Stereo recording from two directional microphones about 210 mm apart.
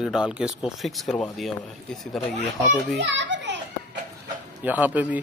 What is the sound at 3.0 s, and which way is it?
Children playing, 60° right (ahead or behind).